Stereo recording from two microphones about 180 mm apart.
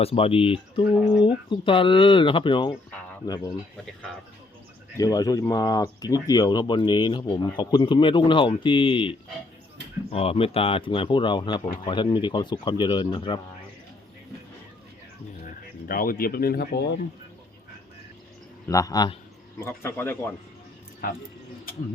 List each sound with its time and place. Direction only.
0.0 s speech: 35° left (ahead or behind)
4.9 s speech: 20° left (ahead or behind)
15.9 s speech: 55° left (ahead or behind)
18.7 s speech: 20° left (ahead or behind)